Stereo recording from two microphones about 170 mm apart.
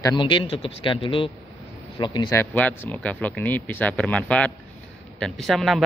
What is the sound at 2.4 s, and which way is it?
Speech, 10° left (ahead or behind).